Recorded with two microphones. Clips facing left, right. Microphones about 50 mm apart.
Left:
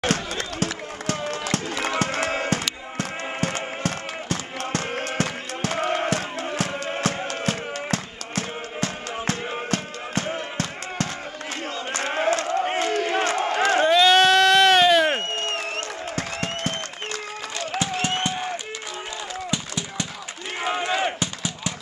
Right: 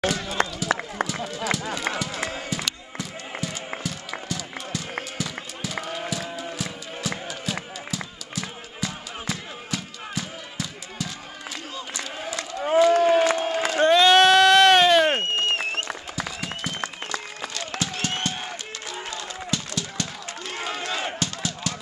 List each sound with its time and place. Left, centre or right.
0.4 s run: right
1.0 s run: left
2.0 s music: left
5.1 s a sound: left
11.9 s crowd: left
13.8 s sheep: centre
16.2 s applause: left
17.7 s a sound: left
19.5 s a sound: centre